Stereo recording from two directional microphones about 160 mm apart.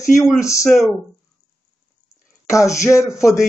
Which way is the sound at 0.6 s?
Centre (ahead or behind).